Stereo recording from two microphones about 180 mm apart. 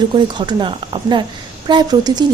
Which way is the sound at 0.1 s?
25° right (ahead or behind).